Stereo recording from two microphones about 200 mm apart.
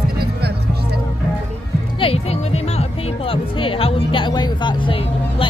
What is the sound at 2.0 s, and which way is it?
Music, 30° left (ahead or behind).